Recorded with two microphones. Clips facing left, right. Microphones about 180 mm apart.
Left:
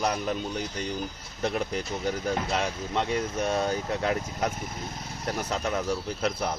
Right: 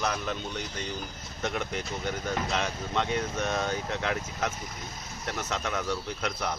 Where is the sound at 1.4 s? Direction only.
35° left (ahead or behind).